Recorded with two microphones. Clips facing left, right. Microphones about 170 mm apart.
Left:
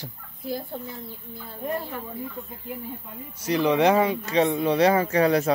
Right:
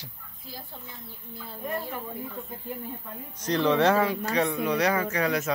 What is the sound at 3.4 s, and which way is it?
Speech, 10° left (ahead or behind).